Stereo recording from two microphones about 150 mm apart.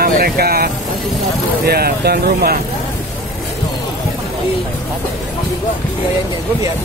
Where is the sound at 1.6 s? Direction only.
90° right.